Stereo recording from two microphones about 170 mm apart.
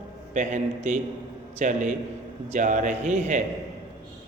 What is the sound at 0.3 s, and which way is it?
A man's voice, 45° right (ahead or behind).